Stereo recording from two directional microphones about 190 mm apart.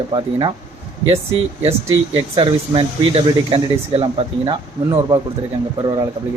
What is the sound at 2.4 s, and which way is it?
Speech, 25° right (ahead or behind).